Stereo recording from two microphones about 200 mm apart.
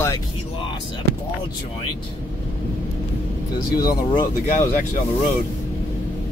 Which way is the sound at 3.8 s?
20° left (ahead or behind).